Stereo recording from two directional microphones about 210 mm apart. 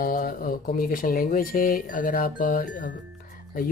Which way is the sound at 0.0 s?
45° left (ahead or behind).